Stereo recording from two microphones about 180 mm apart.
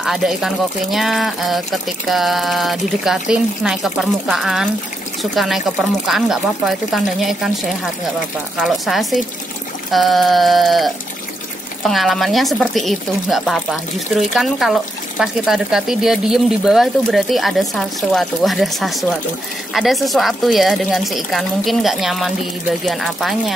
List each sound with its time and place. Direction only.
0.0 s speech: 5° right (ahead or behind)